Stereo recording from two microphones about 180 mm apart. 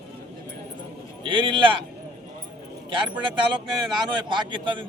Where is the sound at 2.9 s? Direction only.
25° right (ahead or behind).